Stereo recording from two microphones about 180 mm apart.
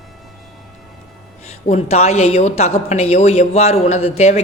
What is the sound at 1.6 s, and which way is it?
A woman's voice, 35° left (ahead or behind).